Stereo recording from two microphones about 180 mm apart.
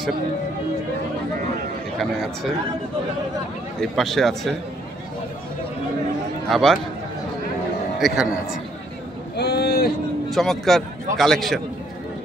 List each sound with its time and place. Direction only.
2.0 s a man's voice: centre (ahead or behind)
3.8 s a man's voice: centre (ahead or behind)
6.5 s a man's voice: centre (ahead or behind)
8.0 s a man's voice: centre (ahead or behind)
9.4 s a sound: 65° left (ahead or behind)
10.3 s a man's voice: centre (ahead or behind)